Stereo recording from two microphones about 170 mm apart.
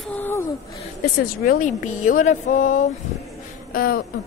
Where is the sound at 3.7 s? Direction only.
60° left (ahead or behind).